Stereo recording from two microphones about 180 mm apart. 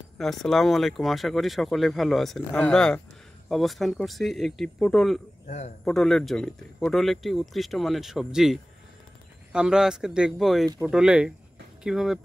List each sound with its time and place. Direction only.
0.2 s speech: centre (ahead or behind)